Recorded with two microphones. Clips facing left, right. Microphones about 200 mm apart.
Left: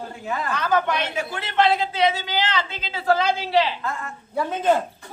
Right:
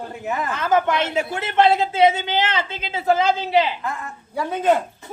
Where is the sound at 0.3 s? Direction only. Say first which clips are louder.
Right 2 dB; 20° right (ahead or behind).